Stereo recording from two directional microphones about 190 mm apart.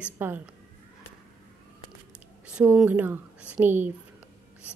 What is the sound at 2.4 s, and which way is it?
A woman's voice, 5° right (ahead or behind).